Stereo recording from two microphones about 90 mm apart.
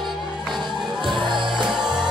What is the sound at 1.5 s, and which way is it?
Music, 5° right (ahead or behind).